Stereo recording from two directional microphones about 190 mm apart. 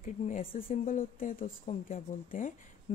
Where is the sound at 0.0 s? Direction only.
45° left (ahead or behind).